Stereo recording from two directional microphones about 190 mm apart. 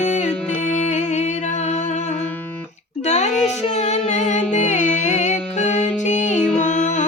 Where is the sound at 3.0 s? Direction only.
35° left (ahead or behind).